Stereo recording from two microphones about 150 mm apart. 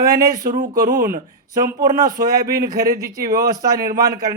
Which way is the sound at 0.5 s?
60° right (ahead or behind).